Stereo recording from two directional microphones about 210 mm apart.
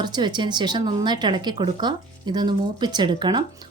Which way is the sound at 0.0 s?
20° right (ahead or behind).